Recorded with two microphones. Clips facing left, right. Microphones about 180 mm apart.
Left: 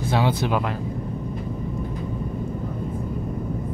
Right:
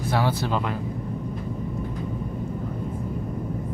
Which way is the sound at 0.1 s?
20° left (ahead or behind).